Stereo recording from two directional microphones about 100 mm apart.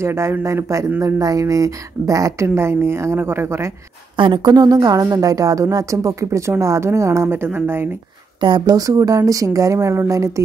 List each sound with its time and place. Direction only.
0.0 s speech: 25° right (ahead or behind)
4.2 s speech: 50° right (ahead or behind); by 7.9 s 20° right (ahead or behind)
8.4 s speech: 50° right (ahead or behind); by 10.4 s 35° right (ahead or behind)